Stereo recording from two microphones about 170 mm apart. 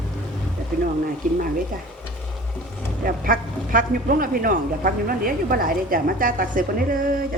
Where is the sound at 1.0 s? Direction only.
55° right (ahead or behind).